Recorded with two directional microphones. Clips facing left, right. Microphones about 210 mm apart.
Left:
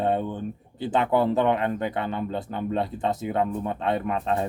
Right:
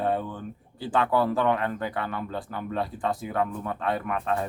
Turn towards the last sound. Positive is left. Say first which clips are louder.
# left 3 dB
turn(degrees=25)  # may be behind; listen again after turning